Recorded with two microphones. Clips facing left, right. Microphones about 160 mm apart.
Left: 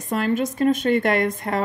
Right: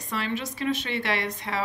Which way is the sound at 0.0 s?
50° left (ahead or behind).